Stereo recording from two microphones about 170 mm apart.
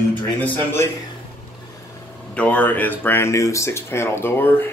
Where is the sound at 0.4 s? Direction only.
10° left (ahead or behind).